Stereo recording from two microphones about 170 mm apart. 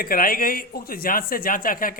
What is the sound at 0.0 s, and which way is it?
A man's voice, 60° left (ahead or behind).